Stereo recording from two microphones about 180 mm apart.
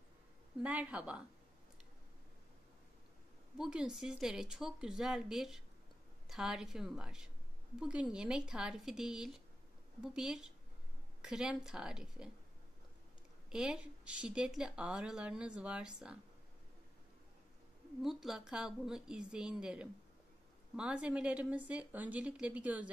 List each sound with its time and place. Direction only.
0.6 s speech: 10° right (ahead or behind)
3.5 s a woman's voice: 5° right (ahead or behind)
13.5 s a woman's voice: 5° right (ahead or behind)
18.0 s a woman's voice: centre (ahead or behind)